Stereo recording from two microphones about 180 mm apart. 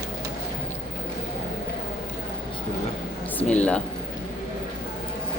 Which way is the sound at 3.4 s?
5° left (ahead or behind).